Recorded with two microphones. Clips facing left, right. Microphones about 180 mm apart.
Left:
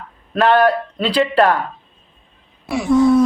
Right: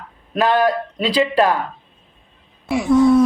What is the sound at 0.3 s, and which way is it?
Speech, 15° right (ahead or behind).